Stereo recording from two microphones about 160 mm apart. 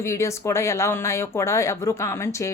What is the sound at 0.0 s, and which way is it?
A woman's voice, 20° left (ahead or behind).